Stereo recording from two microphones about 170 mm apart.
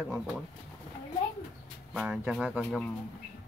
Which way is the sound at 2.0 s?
5° right (ahead or behind).